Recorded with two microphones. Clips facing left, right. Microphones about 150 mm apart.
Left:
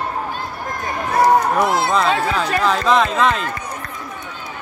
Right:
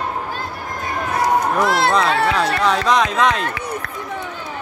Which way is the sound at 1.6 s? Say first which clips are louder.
Right 1 dB; 85° right.